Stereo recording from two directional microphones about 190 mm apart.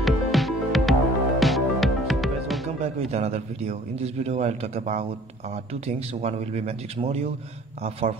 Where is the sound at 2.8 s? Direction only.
35° right (ahead or behind).